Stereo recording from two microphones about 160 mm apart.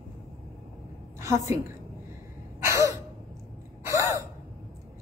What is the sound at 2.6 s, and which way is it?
Gasp, 20° right (ahead or behind).